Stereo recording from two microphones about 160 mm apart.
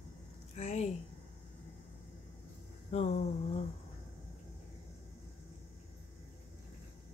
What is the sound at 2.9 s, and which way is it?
Speech, 40° left (ahead or behind).